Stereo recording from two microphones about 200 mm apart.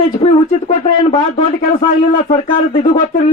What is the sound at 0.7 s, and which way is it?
Speech, 35° left (ahead or behind).